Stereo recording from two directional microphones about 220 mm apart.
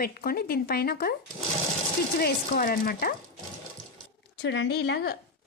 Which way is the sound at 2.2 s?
40° left (ahead or behind).